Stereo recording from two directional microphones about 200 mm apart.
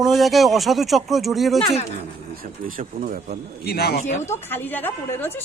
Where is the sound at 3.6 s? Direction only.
55° left (ahead or behind).